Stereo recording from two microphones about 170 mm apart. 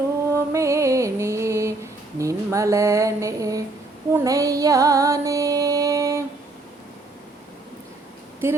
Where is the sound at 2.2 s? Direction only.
20° right (ahead or behind).